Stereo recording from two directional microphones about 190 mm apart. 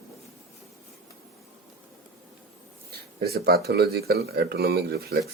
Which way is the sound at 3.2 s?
55° right (ahead or behind).